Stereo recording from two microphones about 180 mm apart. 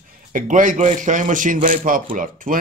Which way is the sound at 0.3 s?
45° right (ahead or behind).